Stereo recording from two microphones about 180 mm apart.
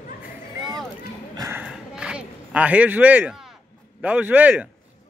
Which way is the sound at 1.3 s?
20° right (ahead or behind).